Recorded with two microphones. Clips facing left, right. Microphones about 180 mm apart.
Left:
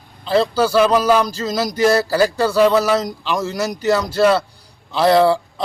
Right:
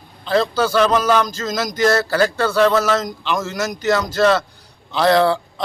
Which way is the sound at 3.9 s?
10° left (ahead or behind).